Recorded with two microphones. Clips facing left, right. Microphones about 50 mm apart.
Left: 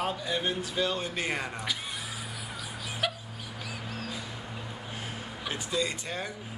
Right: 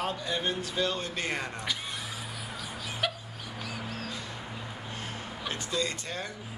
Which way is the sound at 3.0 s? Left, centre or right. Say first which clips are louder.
Even; centre.